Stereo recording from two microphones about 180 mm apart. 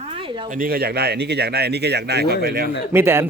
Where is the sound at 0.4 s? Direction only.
50° right (ahead or behind).